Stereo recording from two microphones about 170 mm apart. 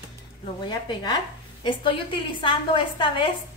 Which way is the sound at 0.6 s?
25° left (ahead or behind).